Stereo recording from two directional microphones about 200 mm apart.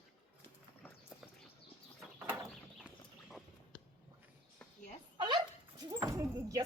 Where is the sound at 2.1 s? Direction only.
10° right (ahead or behind).